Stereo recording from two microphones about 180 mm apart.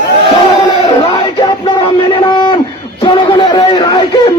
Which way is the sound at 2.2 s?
25° left (ahead or behind).